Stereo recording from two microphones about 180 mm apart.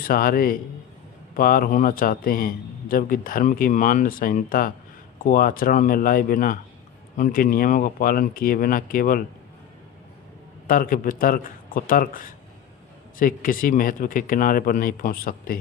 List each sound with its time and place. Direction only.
0.0 s a man's voice: 50° left (ahead or behind)
10.7 s a man's voice: 50° left (ahead or behind)